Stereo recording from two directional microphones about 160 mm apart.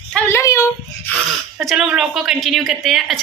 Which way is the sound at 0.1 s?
20° left (ahead or behind).